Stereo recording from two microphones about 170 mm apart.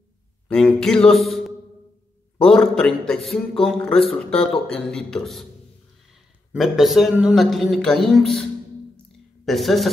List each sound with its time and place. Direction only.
0.5 s a sound: 5° left (ahead or behind)
2.3 s speech: 5° left (ahead or behind)
6.5 s speech: centre (ahead or behind)
9.5 s speech: centre (ahead or behind)